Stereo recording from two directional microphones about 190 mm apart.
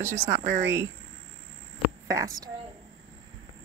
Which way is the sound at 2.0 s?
15° right (ahead or behind).